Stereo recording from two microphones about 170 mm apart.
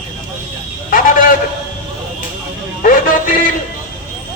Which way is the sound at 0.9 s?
50° left (ahead or behind).